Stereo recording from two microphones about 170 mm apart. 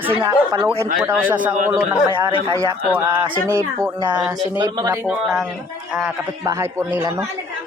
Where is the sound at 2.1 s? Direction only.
30° right (ahead or behind).